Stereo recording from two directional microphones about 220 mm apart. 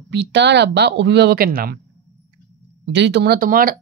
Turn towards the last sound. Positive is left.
turn(degrees=-40)  # may be behind; listen again after turning